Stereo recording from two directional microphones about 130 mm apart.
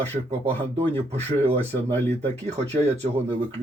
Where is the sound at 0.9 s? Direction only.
55° right (ahead or behind).